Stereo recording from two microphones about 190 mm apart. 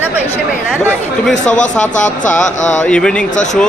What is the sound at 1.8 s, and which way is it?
Speech, 40° left (ahead or behind).